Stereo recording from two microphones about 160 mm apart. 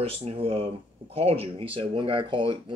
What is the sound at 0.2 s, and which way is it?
Speech, 40° right (ahead or behind).